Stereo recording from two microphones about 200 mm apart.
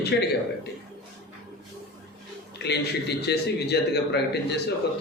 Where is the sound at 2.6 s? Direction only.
55° left (ahead or behind).